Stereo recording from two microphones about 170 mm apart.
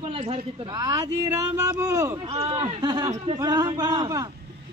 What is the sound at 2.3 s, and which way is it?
A man's voice, 30° right (ahead or behind).